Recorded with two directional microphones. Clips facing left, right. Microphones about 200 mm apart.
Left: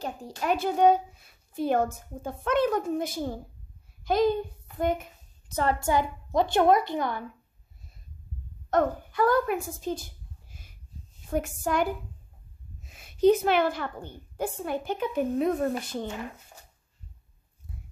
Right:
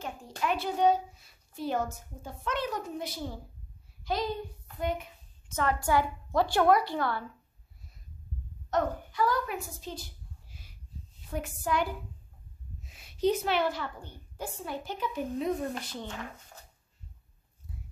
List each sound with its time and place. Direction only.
0.4 s a woman's voice: 45° left (ahead or behind)
5.5 s a woman's voice: 30° left (ahead or behind)
8.6 s a woman's voice: 55° left (ahead or behind)
11.1 s a woman's voice: 45° left (ahead or behind)